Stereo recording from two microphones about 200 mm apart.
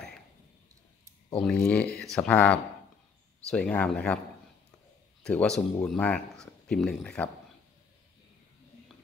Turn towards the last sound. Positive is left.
turn(degrees=5)  # may be behind; listen again after turning